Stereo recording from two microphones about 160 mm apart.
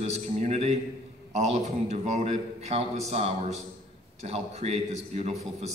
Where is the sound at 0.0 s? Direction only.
45° right (ahead or behind).